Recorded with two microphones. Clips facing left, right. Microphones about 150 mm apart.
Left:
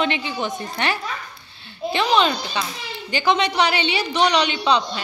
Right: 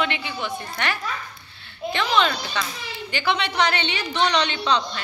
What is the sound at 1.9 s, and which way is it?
A man's voice, 15° left (ahead or behind).